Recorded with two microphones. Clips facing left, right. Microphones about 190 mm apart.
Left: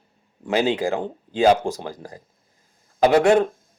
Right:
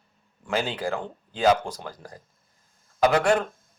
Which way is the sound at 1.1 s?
35° left (ahead or behind).